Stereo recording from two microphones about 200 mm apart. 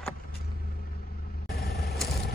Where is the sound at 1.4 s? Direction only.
50° left (ahead or behind).